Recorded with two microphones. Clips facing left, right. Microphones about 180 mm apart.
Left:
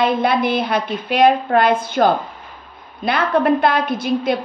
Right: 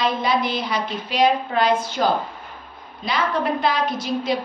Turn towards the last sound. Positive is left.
turn(degrees=55)  # may be behind; listen again after turning